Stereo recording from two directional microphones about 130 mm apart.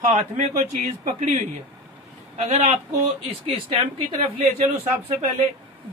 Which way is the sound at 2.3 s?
55° right (ahead or behind).